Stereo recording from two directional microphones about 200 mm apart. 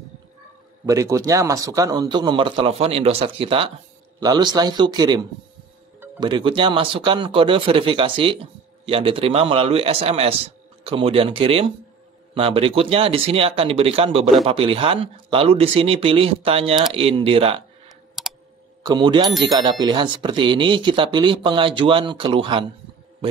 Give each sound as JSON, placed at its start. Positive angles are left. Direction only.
{"t": 0.8, "sound": "speech", "side_deg": -15}
{"t": 18.2, "sound": "computer keyboard", "side_deg": 0}
{"t": 18.8, "sound": "speech", "side_deg": -25}